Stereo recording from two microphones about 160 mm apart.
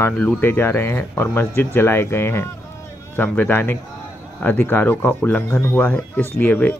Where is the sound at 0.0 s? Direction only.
10° left (ahead or behind).